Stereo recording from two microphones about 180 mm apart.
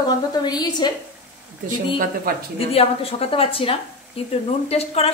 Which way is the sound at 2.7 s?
35° left (ahead or behind).